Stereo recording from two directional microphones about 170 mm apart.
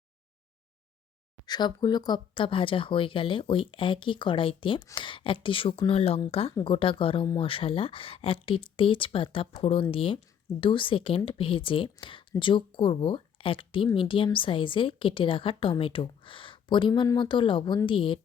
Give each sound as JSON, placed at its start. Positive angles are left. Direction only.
{"t": 1.5, "sound": "speech", "side_deg": 25}